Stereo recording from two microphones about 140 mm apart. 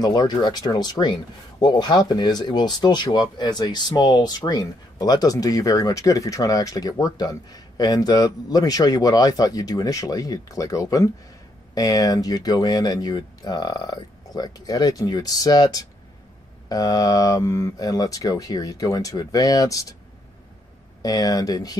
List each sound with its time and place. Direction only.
0.0 s speech: 30° left (ahead or behind)
21.0 s speech: 25° left (ahead or behind)